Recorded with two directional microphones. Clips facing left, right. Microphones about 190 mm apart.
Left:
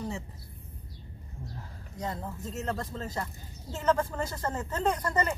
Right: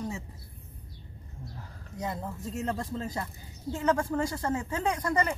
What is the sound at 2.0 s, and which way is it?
Speech, 10° right (ahead or behind).